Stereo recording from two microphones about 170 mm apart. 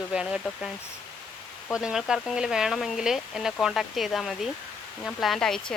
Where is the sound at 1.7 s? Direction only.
5° right (ahead or behind).